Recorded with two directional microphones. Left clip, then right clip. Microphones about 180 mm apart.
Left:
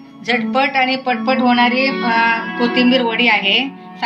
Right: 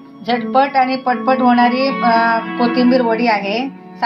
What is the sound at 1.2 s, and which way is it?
Speech, 30° right (ahead or behind).